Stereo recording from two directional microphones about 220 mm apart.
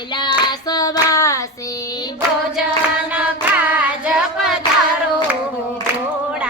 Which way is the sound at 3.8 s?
5° right (ahead or behind).